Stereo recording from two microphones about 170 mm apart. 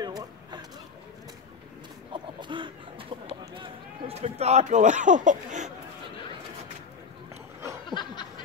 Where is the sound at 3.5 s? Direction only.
35° right (ahead or behind).